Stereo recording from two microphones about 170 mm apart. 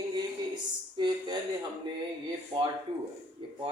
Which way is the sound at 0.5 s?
25° right (ahead or behind).